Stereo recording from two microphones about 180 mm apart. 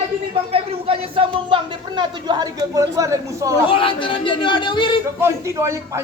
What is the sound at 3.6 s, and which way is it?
Speech, 30° left (ahead or behind).